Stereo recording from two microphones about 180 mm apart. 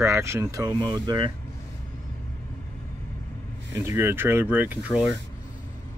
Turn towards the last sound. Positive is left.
turn(degrees=-5)  # may be behind; listen again after turning